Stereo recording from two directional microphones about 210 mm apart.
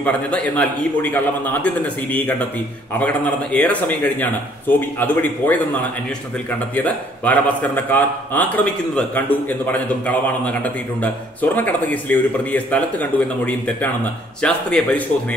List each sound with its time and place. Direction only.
0.0 s a man's voice: 5° left (ahead or behind)
6.7 s a man's voice: 5° left (ahead or behind)